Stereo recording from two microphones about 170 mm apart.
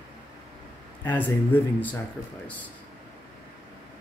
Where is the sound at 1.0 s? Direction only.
10° left (ahead or behind).